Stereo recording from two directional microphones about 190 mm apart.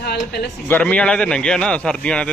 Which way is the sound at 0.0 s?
60° left (ahead or behind).